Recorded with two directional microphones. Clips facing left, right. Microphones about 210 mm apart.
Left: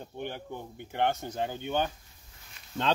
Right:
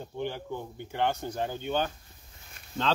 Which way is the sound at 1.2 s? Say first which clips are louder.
Right 1 dB; 15° left (ahead or behind).